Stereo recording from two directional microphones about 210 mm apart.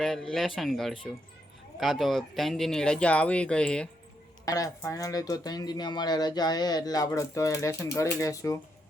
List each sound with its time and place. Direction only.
0.0 s speech: centre (ahead or behind)
4.4 s speech: 15° left (ahead or behind)